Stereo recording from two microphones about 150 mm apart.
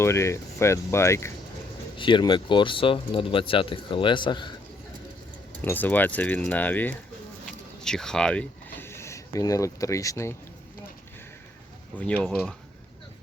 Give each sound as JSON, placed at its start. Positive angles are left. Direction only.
{"t": 0.0, "sound": "speech", "side_deg": 20}
{"t": 2.0, "sound": "speech", "side_deg": 30}
{"t": 5.6, "sound": "speech", "side_deg": 10}
{"t": 7.4, "sound": "a sound", "side_deg": 5}
{"t": 11.9, "sound": "speech", "side_deg": 10}